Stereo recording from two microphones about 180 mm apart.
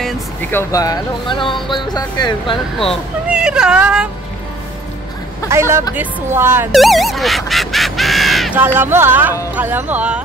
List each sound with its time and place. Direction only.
0.0 s a sound: 10° left (ahead or behind)
1.3 s speech: 25° left (ahead or behind)
2.8 s speech: centre (ahead or behind)
5.5 s speech: 15° right (ahead or behind)
6.7 s a sound: centre (ahead or behind)
8.5 s speech: 10° right (ahead or behind)